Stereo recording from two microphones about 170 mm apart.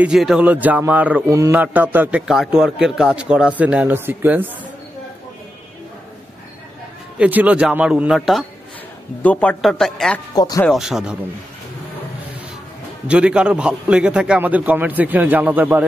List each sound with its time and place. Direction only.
0.0 s speech: 5° right (ahead or behind)
7.2 s speech: 10° right (ahead or behind)
10.3 s speech: 20° left (ahead or behind)
10.6 s speech: centre (ahead or behind)
13.1 s speech: 5° right (ahead or behind)